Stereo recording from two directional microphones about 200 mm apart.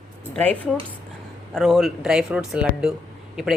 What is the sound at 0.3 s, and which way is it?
Speech, 10° left (ahead or behind).